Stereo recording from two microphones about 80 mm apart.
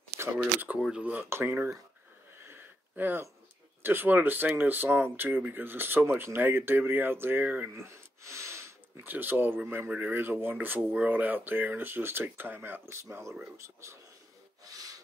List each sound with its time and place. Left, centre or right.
0.4 s speech: centre
2.3 s a sound: right
3.8 s speech: right
7.7 s a sound: right
9.0 s speech: right
14.6 s rub: right